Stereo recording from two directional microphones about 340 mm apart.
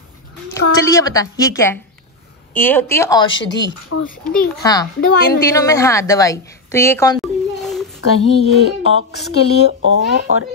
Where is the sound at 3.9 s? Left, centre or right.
Left.